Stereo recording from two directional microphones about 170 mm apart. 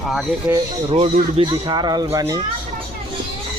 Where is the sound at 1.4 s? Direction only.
25° right (ahead or behind).